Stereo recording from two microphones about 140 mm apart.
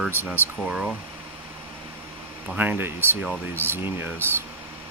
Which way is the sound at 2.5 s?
10° right (ahead or behind).